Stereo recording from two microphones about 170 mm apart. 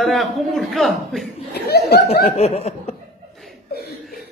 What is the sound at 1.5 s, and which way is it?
Chuckle, 70° left (ahead or behind).